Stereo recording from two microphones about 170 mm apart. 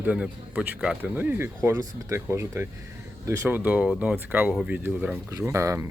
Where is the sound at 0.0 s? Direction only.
10° right (ahead or behind).